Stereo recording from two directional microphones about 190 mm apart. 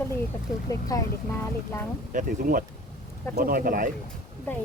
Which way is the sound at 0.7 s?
20° left (ahead or behind).